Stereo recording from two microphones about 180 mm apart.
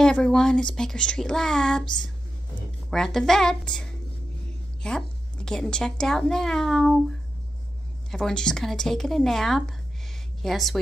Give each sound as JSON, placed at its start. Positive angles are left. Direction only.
{"t": 0.0, "sound": "speech", "side_deg": 5}
{"t": 8.1, "sound": "speech", "side_deg": 5}